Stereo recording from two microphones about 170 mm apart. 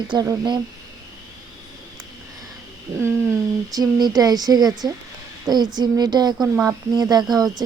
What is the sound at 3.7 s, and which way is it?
Speech, 25° right (ahead or behind).